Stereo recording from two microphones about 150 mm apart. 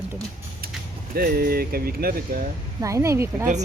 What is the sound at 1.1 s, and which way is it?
Speech, 90° right.